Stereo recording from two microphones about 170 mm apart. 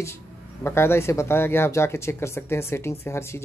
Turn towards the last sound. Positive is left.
turn(degrees=15)  # may be behind; listen again after turning